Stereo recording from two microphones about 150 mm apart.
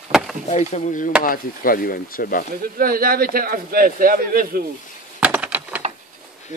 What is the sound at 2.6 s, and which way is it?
Speech, 75° right (ahead or behind).